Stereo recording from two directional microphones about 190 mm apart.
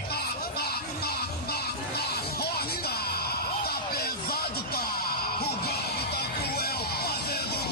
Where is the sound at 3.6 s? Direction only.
55° left (ahead or behind).